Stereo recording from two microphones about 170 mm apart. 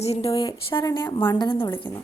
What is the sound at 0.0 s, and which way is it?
Speech, 40° left (ahead or behind).